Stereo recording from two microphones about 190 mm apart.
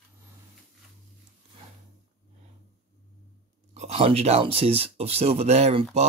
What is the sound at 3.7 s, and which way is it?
Speech, 35° right (ahead or behind).